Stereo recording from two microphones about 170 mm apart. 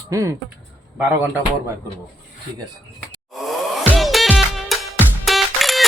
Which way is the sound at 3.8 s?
Centre (ahead or behind).